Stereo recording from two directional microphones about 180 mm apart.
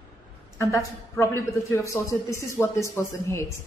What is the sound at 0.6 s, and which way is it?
A man's voice, 15° left (ahead or behind).